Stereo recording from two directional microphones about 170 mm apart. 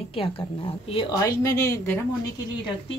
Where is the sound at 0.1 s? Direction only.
30° left (ahead or behind).